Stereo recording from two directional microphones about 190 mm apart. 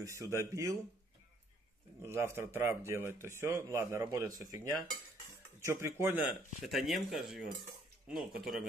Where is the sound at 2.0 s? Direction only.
15° right (ahead or behind).